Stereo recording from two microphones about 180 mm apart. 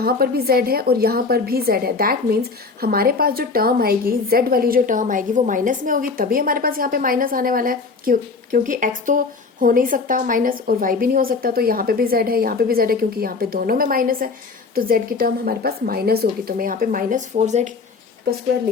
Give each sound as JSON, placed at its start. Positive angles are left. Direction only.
{"t": 0.0, "sound": "a woman's voice", "side_deg": -60}